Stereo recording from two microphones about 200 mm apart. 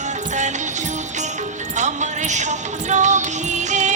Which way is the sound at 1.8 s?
35° right (ahead or behind).